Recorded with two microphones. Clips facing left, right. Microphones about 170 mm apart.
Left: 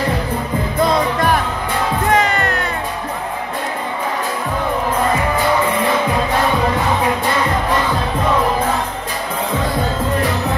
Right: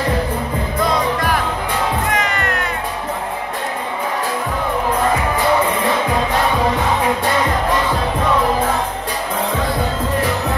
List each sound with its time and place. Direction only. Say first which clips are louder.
2.1 s music: left 4 dB; 30° left (ahead or behind)